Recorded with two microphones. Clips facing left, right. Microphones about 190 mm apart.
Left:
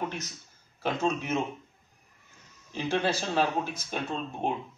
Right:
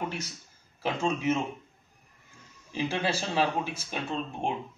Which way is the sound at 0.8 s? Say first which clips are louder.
Right 1 dB; 5° right (ahead or behind).